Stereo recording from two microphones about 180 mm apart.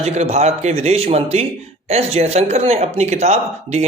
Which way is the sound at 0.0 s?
35° right (ahead or behind).